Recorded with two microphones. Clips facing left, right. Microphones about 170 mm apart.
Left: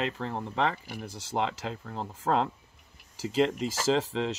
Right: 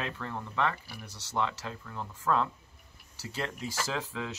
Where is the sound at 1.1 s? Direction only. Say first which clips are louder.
Left 2 dB; 90° left.